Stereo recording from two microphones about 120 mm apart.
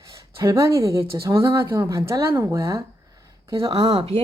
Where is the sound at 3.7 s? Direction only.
45° right (ahead or behind).